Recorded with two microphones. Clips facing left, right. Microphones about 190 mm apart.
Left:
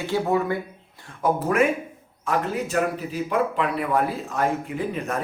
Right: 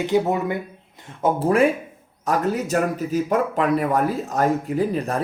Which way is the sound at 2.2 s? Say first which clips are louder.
Right 3 dB; 40° right (ahead or behind).